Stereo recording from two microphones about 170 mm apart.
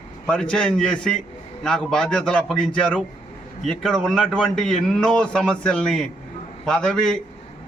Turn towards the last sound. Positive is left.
turn(degrees=5)  # may be behind; listen again after turning